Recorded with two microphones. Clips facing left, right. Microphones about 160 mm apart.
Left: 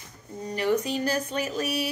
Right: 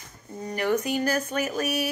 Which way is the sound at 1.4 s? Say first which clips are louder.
Right 1 dB; 50° right (ahead or behind).